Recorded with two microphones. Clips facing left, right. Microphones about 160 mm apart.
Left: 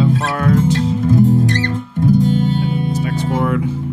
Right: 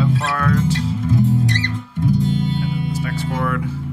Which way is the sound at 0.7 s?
45° left (ahead or behind).